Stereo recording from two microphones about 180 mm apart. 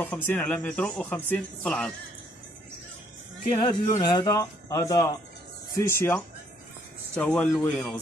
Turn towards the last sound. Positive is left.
turn(degrees=10)  # may be behind; listen again after turning